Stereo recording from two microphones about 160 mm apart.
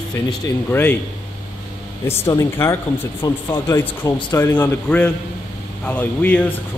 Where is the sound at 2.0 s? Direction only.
15° left (ahead or behind).